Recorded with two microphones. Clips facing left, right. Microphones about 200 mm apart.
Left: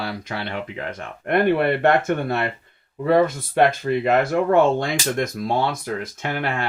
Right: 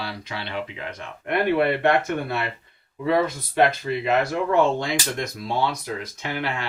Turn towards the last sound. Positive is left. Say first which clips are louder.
# left 3 dB
turn(degrees=50)  # may be behind; listen again after turning